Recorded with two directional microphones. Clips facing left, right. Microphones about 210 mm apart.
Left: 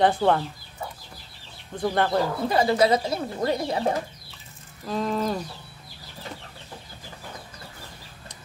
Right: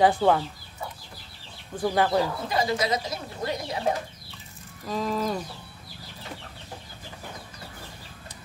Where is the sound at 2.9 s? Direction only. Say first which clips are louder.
Left 5 dB; 30° left (ahead or behind).